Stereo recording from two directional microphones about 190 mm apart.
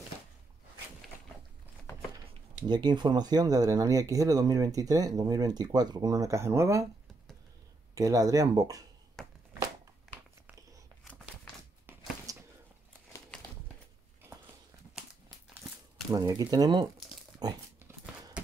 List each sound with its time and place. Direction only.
2.7 s speech: 25° right (ahead or behind)
7.9 s speech: 20° right (ahead or behind)
9.2 s a sound: centre (ahead or behind)
12.3 s a sound: 20° right (ahead or behind)
16.1 s speech: 20° right (ahead or behind)
17.4 s dog: 20° right (ahead or behind)